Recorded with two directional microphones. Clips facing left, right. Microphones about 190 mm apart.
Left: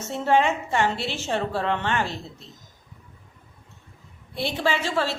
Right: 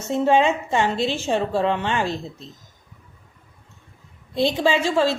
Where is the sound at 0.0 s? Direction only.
15° right (ahead or behind).